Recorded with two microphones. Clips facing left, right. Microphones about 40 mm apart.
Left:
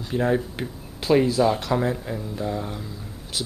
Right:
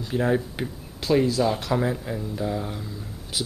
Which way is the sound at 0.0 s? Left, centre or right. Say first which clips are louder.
Left 1 dB; centre.